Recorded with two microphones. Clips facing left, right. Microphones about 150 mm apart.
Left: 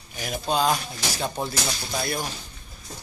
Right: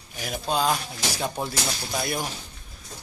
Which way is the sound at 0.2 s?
Centre (ahead or behind).